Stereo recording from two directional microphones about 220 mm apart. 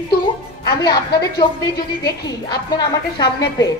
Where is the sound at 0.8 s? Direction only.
20° left (ahead or behind).